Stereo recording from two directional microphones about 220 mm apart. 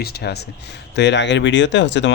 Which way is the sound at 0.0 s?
45° left (ahead or behind).